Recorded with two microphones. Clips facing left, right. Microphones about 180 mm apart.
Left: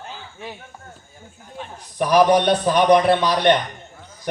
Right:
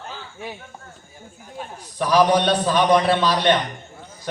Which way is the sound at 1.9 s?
15° left (ahead or behind).